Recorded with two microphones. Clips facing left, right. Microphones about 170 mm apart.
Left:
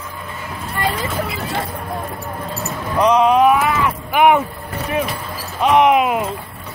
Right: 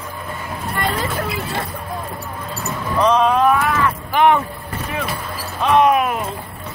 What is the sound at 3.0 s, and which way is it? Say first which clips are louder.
Speech: left 2 dB; 15° left (ahead or behind).